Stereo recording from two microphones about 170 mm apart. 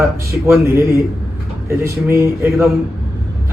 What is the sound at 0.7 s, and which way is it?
A man's voice, 15° right (ahead or behind).